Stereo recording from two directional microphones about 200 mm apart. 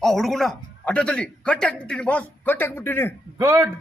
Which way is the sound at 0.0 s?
Centre (ahead or behind).